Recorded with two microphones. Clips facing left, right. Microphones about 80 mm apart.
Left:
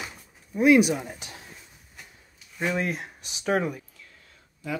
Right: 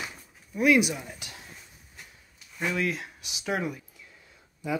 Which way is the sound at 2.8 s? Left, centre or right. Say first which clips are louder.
Even; left.